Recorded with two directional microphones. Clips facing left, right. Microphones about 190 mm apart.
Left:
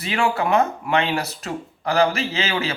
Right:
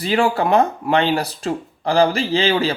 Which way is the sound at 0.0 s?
35° right (ahead or behind).